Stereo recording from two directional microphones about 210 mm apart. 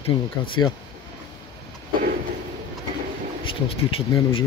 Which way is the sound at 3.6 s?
25° left (ahead or behind).